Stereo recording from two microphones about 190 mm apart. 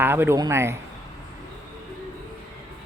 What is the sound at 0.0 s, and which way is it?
Speech, 10° right (ahead or behind).